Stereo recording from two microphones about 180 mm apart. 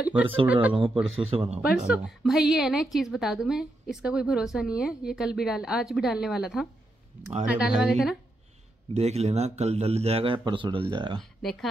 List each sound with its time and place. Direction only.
0.0 s speech: 10° right (ahead or behind)
1.3 s a man's voice: 35° right (ahead or behind)
1.9 s speech: 5° right (ahead or behind)
8.9 s a man's voice: 35° right (ahead or behind)
11.4 s speech: centre (ahead or behind)